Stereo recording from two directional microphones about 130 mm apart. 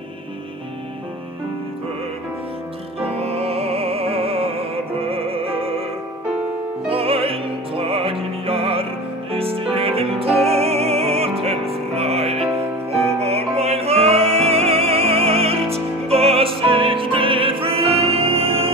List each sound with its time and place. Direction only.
3.0 s music: 50° right (ahead or behind)
6.9 s music: 45° right (ahead or behind)